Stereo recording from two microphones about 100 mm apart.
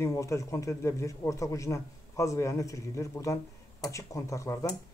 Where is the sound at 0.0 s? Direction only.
30° left (ahead or behind).